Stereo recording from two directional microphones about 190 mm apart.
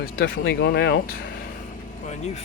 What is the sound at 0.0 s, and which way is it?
Speech, 50° left (ahead or behind).